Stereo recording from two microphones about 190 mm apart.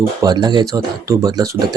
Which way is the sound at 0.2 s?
20° right (ahead or behind).